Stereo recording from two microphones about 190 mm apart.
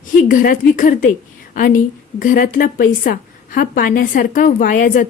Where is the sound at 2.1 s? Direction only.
45° left (ahead or behind).